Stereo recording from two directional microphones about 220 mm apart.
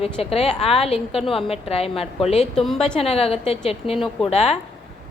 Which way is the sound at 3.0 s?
25° left (ahead or behind).